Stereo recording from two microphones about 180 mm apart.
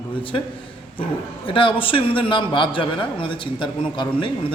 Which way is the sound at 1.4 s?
30° left (ahead or behind).